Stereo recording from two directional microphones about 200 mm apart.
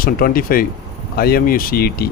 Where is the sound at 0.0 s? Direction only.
45° left (ahead or behind).